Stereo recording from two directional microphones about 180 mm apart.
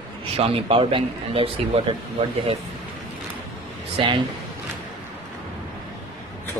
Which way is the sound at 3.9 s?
25° right (ahead or behind).